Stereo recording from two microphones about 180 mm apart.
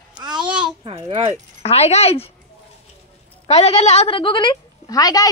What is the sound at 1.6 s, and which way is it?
Speech, 35° left (ahead or behind).